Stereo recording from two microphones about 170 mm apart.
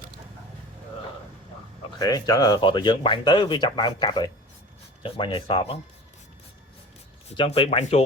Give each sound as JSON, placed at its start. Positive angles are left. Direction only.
{"t": 2.0, "sound": "speech", "side_deg": 20}
{"t": 7.3, "sound": "speech", "side_deg": 35}